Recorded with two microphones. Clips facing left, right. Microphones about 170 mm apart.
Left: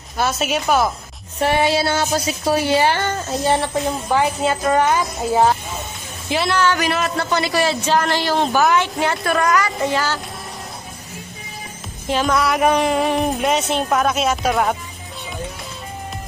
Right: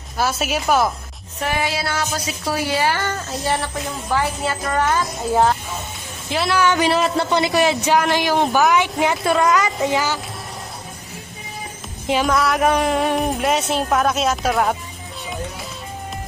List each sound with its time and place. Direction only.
0.2 s speech: 5° right (ahead or behind)
1.4 s a woman's voice: 30° left (ahead or behind)
6.3 s speech: centre (ahead or behind)
6.6 s speech: 20° right (ahead or behind)
12.1 s speech: 5° right (ahead or behind)